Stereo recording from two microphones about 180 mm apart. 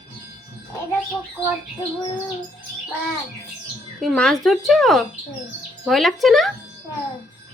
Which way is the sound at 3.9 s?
Centre (ahead or behind).